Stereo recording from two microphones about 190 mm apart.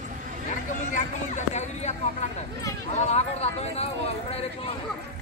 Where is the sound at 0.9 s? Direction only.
40° left (ahead or behind).